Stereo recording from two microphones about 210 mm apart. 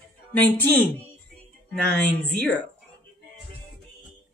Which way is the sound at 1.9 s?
5° left (ahead or behind).